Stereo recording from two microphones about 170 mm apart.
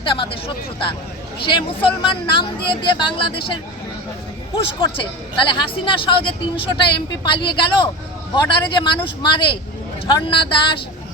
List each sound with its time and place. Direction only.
0.0 s speech: 30° left (ahead or behind)
4.8 s speech: 30° left (ahead or behind)